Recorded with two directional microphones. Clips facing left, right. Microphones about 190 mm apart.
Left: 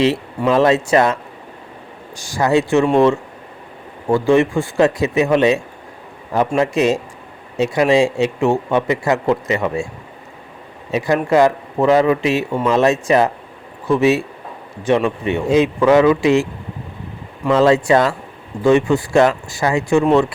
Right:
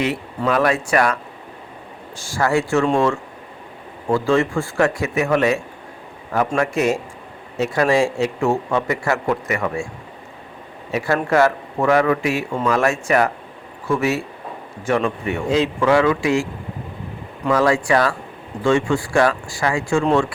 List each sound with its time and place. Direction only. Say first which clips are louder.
0.0 s a man's voice: left 5 dB; 25° left (ahead or behind)
4.1 s a man's voice: left 4 dB; 20° left (ahead or behind)
6.6 s a man's voice: left 4 dB; 20° left (ahead or behind)
10.9 s a man's voice: left 3 dB; 20° left (ahead or behind)
17.5 s a man's voice: left 4 dB; 25° left (ahead or behind)